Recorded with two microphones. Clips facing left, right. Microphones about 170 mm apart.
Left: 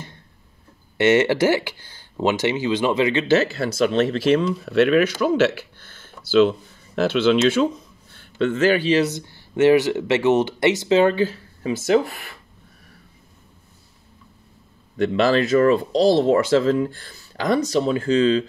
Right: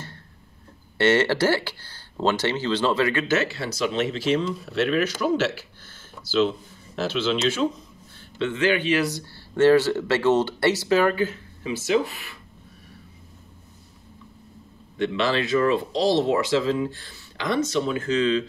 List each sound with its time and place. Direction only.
0.9 s speech: 15° left (ahead or behind)
3.5 s speech: 50° left (ahead or behind)
8.4 s speech: 45° left (ahead or behind); by 11.3 s 25° left (ahead or behind)
11.6 s speech: 50° left (ahead or behind)
15.0 s speech: 45° left (ahead or behind)